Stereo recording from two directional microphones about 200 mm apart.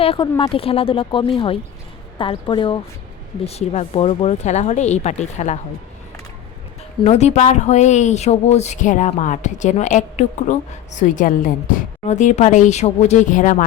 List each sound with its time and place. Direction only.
0.0 s speech: 25° left (ahead or behind)
7.0 s speech: 35° left (ahead or behind)